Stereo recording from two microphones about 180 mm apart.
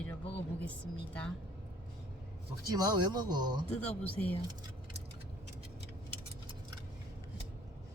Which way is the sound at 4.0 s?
10° left (ahead or behind).